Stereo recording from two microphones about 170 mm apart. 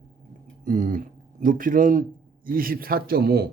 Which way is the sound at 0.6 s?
50° right (ahead or behind).